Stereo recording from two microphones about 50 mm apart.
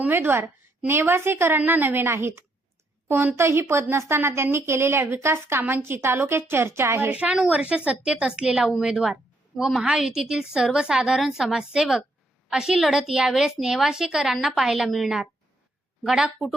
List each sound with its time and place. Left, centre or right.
0.1 s a woman's voice: right
1.5 s a woman's voice: right
7.1 s a woman's voice: right
11.2 s a woman's voice: centre